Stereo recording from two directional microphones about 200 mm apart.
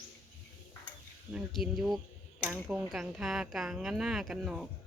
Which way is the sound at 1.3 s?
Centre (ahead or behind).